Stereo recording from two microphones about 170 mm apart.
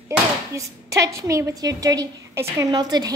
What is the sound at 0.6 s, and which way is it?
A woman's voice, 20° right (ahead or behind).